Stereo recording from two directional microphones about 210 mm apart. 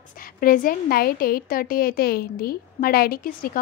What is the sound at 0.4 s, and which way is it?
A woman's voice, 40° left (ahead or behind).